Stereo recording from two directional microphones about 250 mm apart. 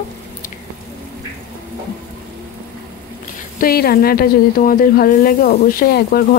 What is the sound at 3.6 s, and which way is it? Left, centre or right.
Speech, left.